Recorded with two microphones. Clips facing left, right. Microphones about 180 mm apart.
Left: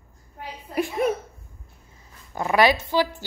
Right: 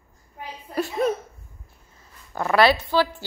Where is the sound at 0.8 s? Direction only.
15° left (ahead or behind).